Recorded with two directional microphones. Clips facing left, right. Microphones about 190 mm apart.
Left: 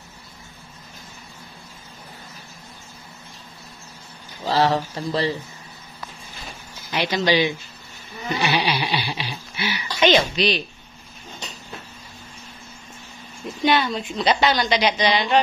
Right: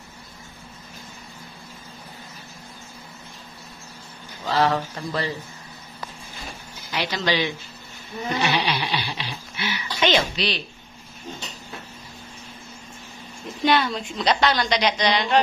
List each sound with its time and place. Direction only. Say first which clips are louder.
4.6 s speech: left 1 dB; 30° left (ahead or behind)
6.9 s speech: left 4 dB; 15° left (ahead or behind)
8.4 s a sound: left 2 dB; 10° left (ahead or behind)
13.7 s a woman's voice: left 1 dB; centre (ahead or behind)